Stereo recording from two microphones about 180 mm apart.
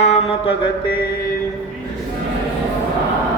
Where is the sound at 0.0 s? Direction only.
35° left (ahead or behind).